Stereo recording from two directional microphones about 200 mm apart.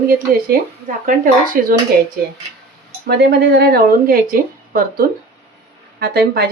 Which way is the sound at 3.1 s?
55° right (ahead or behind).